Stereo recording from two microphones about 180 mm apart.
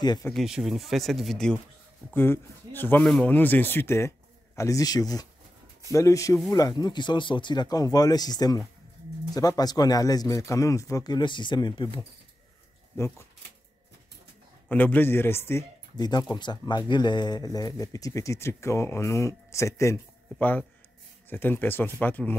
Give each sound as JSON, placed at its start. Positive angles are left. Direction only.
{"t": 0.3, "sound": "speech", "side_deg": 0}
{"t": 14.7, "sound": "speech", "side_deg": 10}